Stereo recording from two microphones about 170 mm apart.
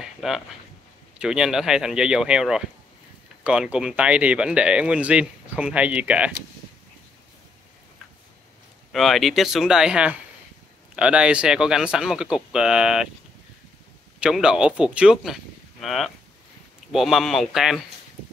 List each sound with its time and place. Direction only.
0.0 s a sound: centre (ahead or behind)
1.1 s speech: 5° right (ahead or behind)
8.9 s speech: centre (ahead or behind)
14.2 s speech: 5° right (ahead or behind)